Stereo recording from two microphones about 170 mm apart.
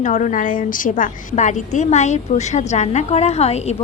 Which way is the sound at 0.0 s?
45° left (ahead or behind).